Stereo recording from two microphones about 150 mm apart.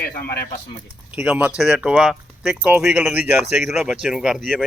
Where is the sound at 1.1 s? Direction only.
10° right (ahead or behind).